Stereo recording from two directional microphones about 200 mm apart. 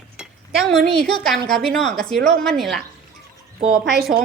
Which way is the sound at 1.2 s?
Centre (ahead or behind).